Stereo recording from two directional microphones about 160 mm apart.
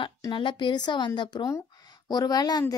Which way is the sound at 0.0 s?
30° left (ahead or behind).